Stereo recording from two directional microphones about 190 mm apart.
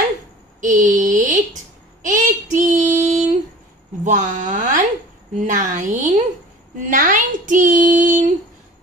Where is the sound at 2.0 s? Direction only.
40° right (ahead or behind).